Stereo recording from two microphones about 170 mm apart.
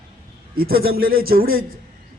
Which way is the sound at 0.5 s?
60° right (ahead or behind).